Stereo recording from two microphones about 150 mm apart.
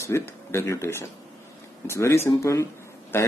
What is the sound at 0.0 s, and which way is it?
Speech, 15° left (ahead or behind).